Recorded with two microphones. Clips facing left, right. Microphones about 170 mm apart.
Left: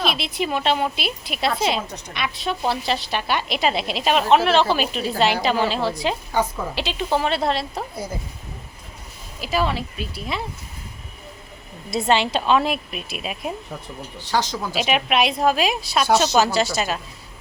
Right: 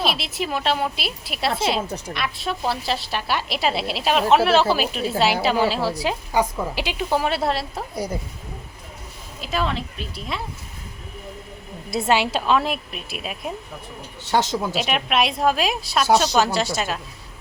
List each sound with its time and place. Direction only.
0.0 s a woman's voice: 5° right (ahead or behind)
9.4 s a woman's voice: 5° left (ahead or behind)
11.9 s a woman's voice: 5° right (ahead or behind)
14.3 s speech: 25° right (ahead or behind)
14.7 s a woman's voice: centre (ahead or behind)